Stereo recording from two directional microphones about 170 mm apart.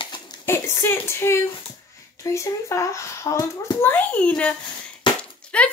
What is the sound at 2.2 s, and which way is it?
Speech, 15° left (ahead or behind).